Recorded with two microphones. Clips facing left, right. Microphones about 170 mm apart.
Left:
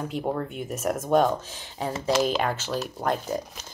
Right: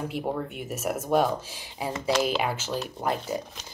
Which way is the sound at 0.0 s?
5° right (ahead or behind).